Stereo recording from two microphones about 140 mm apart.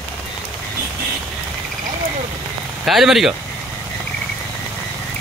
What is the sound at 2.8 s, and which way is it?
Speech, centre (ahead or behind).